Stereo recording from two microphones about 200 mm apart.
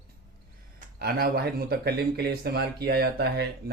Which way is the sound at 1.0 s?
50° right (ahead or behind).